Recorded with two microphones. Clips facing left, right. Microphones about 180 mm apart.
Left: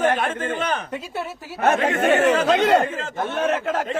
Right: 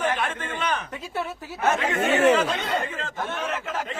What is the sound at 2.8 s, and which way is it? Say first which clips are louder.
Speech: left 7 dB; 40° left (ahead or behind).